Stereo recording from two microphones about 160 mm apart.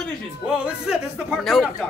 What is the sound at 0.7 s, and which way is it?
Speech, 5° right (ahead or behind).